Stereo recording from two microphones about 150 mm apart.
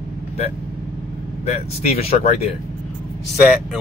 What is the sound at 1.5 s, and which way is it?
Speech, 40° left (ahead or behind).